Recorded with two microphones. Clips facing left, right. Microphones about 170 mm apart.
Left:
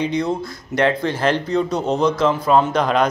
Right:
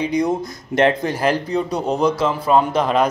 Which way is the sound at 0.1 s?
15° right (ahead or behind).